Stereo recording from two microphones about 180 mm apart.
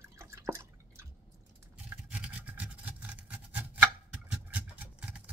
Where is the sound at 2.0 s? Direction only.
5° right (ahead or behind).